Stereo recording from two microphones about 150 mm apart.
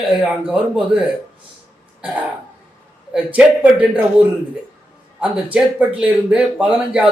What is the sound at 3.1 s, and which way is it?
Speech, 10° right (ahead or behind).